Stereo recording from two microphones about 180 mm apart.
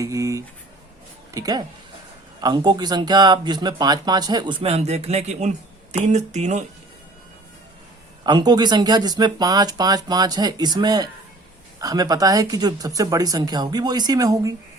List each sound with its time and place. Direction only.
0.0 s speech: 15° right (ahead or behind); by 6.7 s 40° right (ahead or behind)
8.2 s speech: 25° right (ahead or behind)